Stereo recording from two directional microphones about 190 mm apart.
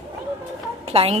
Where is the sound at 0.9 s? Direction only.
30° right (ahead or behind).